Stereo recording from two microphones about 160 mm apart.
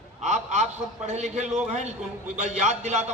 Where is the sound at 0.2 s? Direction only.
50° right (ahead or behind).